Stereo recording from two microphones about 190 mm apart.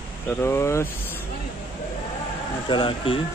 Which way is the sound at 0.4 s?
15° left (ahead or behind).